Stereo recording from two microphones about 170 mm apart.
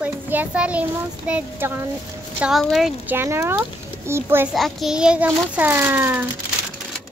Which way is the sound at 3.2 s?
15° right (ahead or behind).